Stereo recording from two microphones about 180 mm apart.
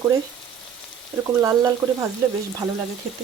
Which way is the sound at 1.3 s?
20° right (ahead or behind).